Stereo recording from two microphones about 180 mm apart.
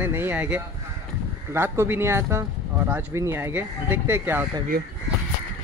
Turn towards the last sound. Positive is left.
turn(degrees=-55)  # may be behind; listen again after turning